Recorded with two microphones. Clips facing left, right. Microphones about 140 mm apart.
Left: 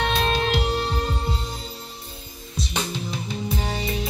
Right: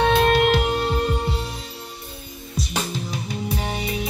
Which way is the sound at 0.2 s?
55° right (ahead or behind).